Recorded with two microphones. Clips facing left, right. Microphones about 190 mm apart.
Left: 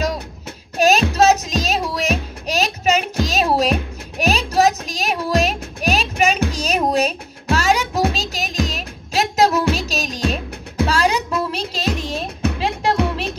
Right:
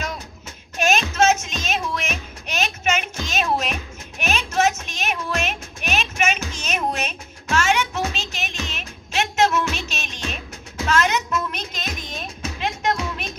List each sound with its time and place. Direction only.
0.7 s child singing: 35° left (ahead or behind)
1.1 s music: 35° left (ahead or behind)
2.4 s a sound: 35° left (ahead or behind)
4.2 s music: 35° left (ahead or behind)